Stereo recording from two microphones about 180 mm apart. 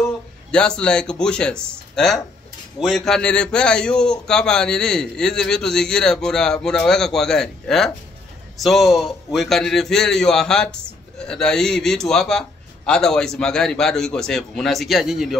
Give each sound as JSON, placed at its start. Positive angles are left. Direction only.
{"t": 0.5, "sound": "a man's voice", "side_deg": 5}